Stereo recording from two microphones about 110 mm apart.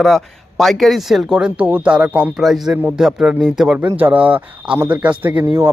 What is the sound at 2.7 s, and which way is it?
Speech, 20° right (ahead or behind).